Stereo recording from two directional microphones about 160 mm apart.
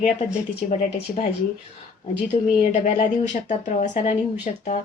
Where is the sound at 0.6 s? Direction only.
55° left (ahead or behind).